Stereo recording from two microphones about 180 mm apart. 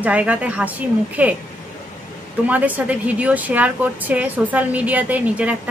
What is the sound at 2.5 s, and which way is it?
A woman's voice, 10° right (ahead or behind).